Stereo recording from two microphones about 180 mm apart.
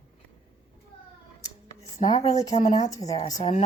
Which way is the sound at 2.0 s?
20° left (ahead or behind).